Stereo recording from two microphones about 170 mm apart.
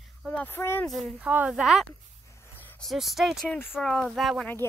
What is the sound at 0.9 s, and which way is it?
Speech, centre (ahead or behind).